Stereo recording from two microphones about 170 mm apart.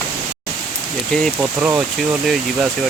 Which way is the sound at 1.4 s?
10° right (ahead or behind).